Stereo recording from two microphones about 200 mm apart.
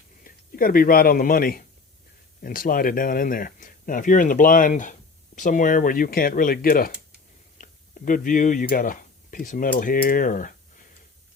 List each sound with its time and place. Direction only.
0.3 s speech: 45° left (ahead or behind)